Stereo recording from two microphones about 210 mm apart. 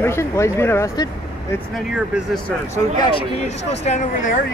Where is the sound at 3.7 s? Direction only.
30° left (ahead or behind).